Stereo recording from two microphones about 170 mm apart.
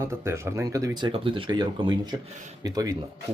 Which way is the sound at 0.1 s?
15° right (ahead or behind).